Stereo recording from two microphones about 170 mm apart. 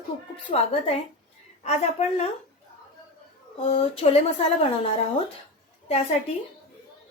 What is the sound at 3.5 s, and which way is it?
A woman's voice, 35° left (ahead or behind).